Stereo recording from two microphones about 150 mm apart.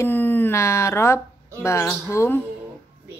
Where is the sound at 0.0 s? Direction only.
15° left (ahead or behind).